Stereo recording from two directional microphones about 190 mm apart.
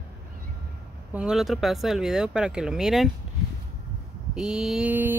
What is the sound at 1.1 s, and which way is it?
Speech, 5° right (ahead or behind).